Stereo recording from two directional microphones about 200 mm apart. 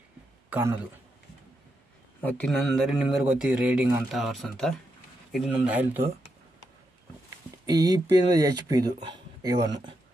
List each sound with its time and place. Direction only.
0.5 s a man's voice: 10° right (ahead or behind)
2.2 s speech: 5° left (ahead or behind)
7.6 s speech: 20° right (ahead or behind)